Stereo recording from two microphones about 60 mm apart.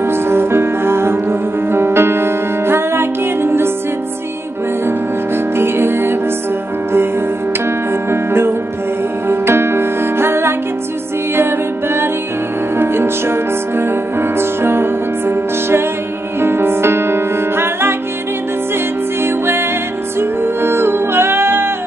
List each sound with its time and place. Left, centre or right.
0.0 s music: right
5.6 s music: right
8.1 s music: right
12.7 s music: right
19.2 s music: right